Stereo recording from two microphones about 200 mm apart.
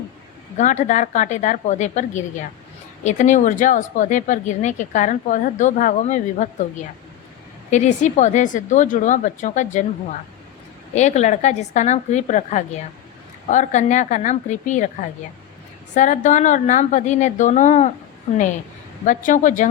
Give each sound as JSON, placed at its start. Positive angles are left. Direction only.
{"t": 0.5, "sound": "speech", "side_deg": 35}
{"t": 7.7, "sound": "speech", "side_deg": 35}
{"t": 16.0, "sound": "speech", "side_deg": 40}
{"t": 19.0, "sound": "speech", "side_deg": 40}